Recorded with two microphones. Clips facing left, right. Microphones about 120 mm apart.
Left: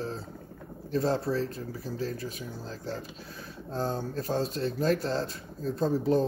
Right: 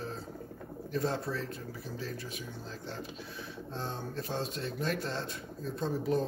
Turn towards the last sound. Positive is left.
turn(degrees=35)  # may be behind; listen again after turning